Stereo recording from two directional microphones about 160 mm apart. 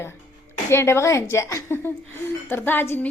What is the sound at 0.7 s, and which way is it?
A woman's voice, 15° left (ahead or behind).